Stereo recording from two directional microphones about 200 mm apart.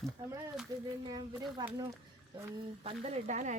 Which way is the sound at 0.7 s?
20° right (ahead or behind).